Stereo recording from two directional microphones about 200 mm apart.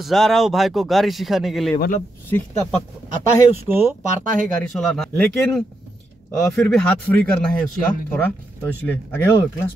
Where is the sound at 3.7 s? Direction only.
10° right (ahead or behind).